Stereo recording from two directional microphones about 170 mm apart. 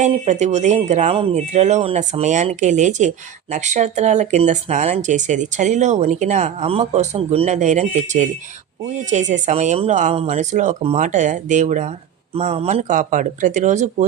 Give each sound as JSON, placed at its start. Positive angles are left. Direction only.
{"t": 0.0, "sound": "speech", "side_deg": -45}